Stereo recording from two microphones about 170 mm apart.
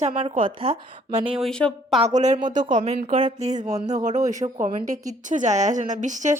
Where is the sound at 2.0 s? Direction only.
45° right (ahead or behind).